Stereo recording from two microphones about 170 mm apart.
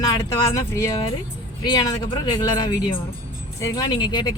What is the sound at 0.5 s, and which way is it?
Speech, 20° left (ahead or behind).